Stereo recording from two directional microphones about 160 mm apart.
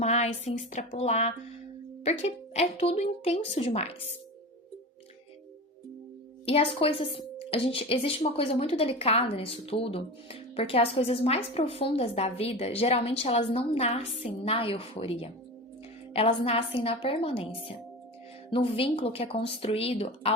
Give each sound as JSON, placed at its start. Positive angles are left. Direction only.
{"t": 0.0, "sound": "speech", "side_deg": 45}
{"t": 6.4, "sound": "speech", "side_deg": 35}